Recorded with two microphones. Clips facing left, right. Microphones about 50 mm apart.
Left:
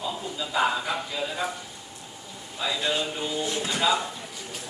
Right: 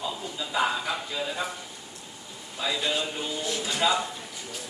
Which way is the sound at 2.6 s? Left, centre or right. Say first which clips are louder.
Left 1 dB; centre.